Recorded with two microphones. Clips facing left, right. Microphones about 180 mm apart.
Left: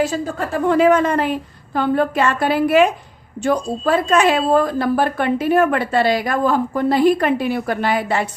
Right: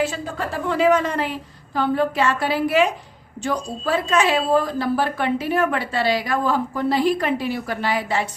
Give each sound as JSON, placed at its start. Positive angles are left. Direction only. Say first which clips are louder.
{"t": 0.0, "sound": "a woman's voice", "louder": "left 4 dB", "side_deg": 45}